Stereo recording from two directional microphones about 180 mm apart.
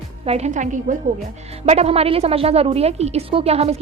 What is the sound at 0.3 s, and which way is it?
A woman's voice, 40° right (ahead or behind).